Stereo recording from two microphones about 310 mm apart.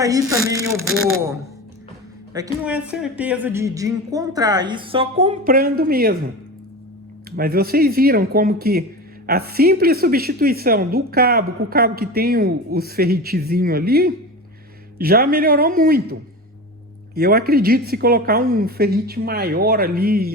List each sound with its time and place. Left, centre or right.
0.0 s speech: centre
0.8 s speech: right
2.3 s speech: centre; by 6.1 s right
7.3 s speech: right
17.2 s speech: right